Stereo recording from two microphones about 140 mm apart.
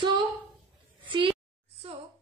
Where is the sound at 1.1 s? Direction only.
40° right (ahead or behind).